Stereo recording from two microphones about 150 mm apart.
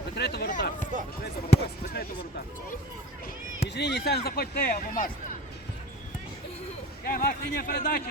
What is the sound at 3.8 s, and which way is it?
Speech, 90° left.